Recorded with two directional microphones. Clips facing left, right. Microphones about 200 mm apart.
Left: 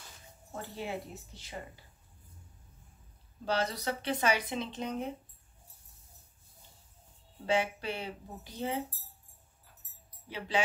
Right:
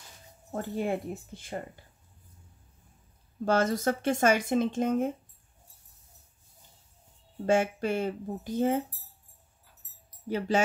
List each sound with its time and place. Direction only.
0.6 s speech: 50° right (ahead or behind)
3.4 s speech: 50° right (ahead or behind)
7.4 s speech: 45° right (ahead or behind)
10.2 s speech: 45° right (ahead or behind)